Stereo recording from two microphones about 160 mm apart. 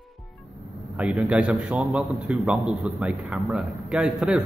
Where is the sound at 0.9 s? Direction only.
5° right (ahead or behind).